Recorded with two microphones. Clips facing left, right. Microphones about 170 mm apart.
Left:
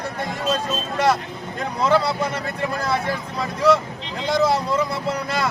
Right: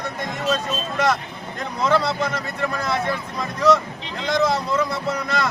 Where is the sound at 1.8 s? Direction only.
10° left (ahead or behind).